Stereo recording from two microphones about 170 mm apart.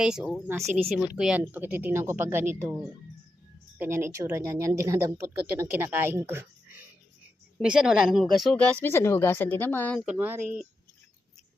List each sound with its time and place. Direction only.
0.0 s speech: 5° right (ahead or behind)
0.4 s speech: 15° right (ahead or behind)
0.9 s speech: 5° right (ahead or behind)
7.6 s speech: 5° right (ahead or behind)
10.1 s speech: 10° right (ahead or behind)